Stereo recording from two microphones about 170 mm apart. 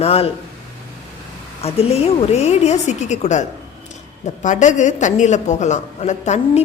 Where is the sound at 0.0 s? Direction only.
35° left (ahead or behind).